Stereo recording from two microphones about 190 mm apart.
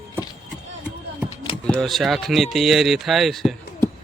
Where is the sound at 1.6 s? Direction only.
5° left (ahead or behind).